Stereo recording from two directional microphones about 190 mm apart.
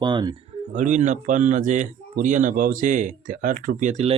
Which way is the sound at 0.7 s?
40° right (ahead or behind).